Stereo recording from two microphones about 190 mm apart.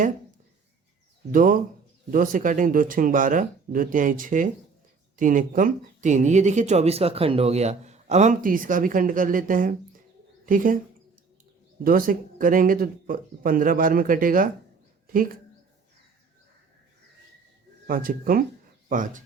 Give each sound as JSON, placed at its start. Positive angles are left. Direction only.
{"t": 1.3, "sound": "speech", "side_deg": -45}
{"t": 11.8, "sound": "speech", "side_deg": -50}
{"t": 17.8, "sound": "speech", "side_deg": -50}